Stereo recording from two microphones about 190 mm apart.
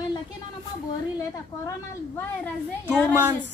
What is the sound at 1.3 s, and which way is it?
Speech, 15° left (ahead or behind).